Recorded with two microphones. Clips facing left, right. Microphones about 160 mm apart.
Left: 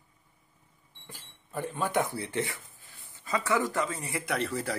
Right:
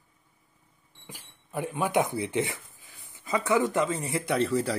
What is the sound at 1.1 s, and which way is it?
Speech, 15° right (ahead or behind).